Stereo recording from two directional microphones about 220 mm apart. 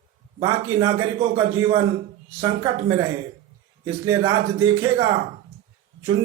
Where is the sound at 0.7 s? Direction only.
20° right (ahead or behind).